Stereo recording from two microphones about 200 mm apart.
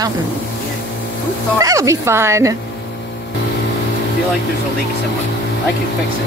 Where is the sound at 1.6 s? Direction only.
15° right (ahead or behind).